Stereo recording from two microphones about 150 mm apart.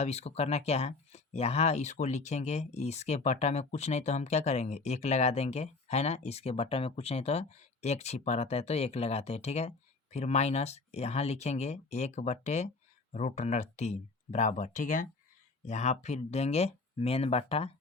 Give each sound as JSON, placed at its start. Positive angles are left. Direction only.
{"t": 0.0, "sound": "speech", "side_deg": 45}
{"t": 15.6, "sound": "speech", "side_deg": 50}